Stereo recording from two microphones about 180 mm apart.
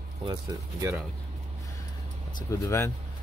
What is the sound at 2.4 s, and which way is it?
Speech, 15° left (ahead or behind).